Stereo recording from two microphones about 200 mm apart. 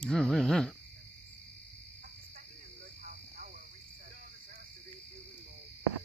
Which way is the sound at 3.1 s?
40° right (ahead or behind).